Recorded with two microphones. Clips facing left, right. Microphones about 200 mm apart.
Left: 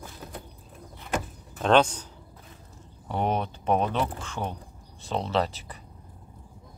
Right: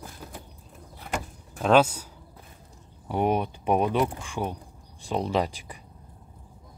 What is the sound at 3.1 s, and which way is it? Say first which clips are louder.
Speech: right 3 dB; 10° right (ahead or behind).